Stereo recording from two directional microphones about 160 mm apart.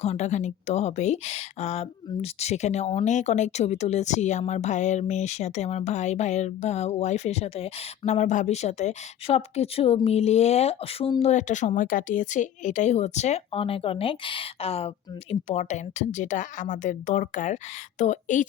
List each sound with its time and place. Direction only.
0.0 s speech: 45° left (ahead or behind)